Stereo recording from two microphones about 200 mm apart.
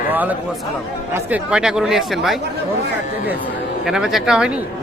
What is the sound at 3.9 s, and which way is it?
Speech, centre (ahead or behind).